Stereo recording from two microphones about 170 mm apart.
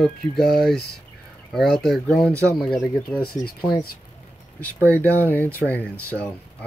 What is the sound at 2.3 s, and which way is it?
Speech, 15° right (ahead or behind).